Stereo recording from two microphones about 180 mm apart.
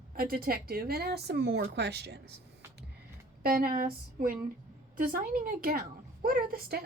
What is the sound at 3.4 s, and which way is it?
A woman's voice, 55° right (ahead or behind).